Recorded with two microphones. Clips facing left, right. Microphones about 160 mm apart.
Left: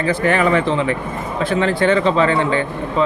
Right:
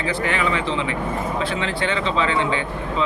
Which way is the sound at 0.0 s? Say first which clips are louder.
Left 6 dB; 45° left (ahead or behind).